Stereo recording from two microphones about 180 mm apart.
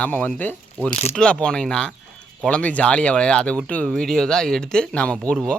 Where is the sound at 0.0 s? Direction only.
10° left (ahead or behind).